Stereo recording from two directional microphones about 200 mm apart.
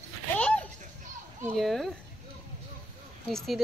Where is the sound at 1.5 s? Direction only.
Centre (ahead or behind).